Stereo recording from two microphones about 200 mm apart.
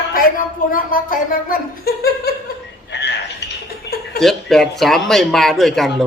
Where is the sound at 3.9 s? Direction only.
60° left (ahead or behind).